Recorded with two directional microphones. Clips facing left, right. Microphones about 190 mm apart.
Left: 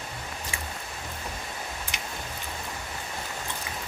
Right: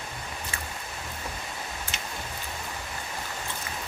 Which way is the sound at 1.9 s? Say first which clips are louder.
Even; 15° left (ahead or behind).